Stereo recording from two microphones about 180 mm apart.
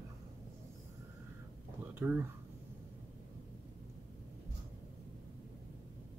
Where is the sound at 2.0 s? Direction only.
10° right (ahead or behind).